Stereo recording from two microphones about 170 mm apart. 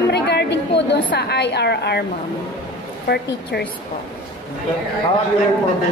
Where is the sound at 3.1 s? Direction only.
75° left (ahead or behind).